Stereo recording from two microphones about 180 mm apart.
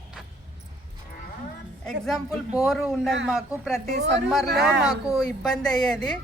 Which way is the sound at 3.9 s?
75° right (ahead or behind).